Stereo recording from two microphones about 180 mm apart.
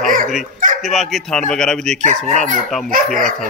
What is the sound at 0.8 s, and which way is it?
Speech, centre (ahead or behind).